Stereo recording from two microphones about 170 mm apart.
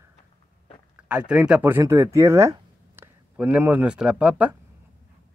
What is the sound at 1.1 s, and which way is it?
Speech, 5° right (ahead or behind).